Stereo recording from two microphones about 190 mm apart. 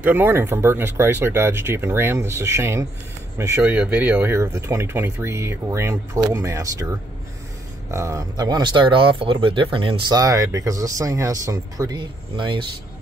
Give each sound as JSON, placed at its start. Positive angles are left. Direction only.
{"t": 0.0, "sound": "speech", "side_deg": -10}
{"t": 7.9, "sound": "speech", "side_deg": -15}